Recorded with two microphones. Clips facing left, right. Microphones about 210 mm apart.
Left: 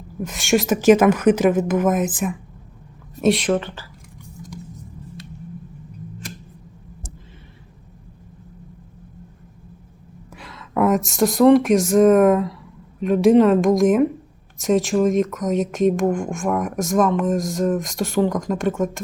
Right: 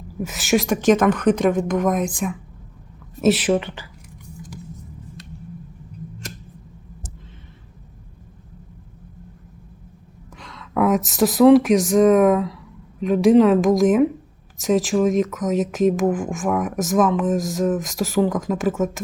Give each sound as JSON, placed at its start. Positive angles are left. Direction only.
{"t": 0.2, "sound": "a woman's voice", "side_deg": -5}
{"t": 10.3, "sound": "speech", "side_deg": 5}